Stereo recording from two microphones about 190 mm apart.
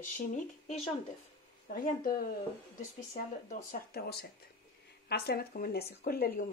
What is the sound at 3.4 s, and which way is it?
Speech, 45° left (ahead or behind).